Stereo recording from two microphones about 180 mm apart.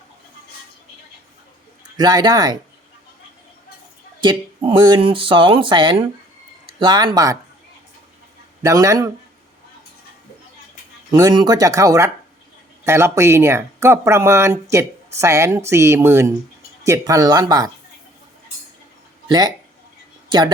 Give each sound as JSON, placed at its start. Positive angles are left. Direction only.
{"t": 2.0, "sound": "speech", "side_deg": -25}
{"t": 4.2, "sound": "speech", "side_deg": -25}
{"t": 8.6, "sound": "speech", "side_deg": -15}
{"t": 11.1, "sound": "speech", "side_deg": -25}